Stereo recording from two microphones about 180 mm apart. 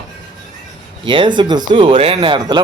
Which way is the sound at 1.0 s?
25° right (ahead or behind).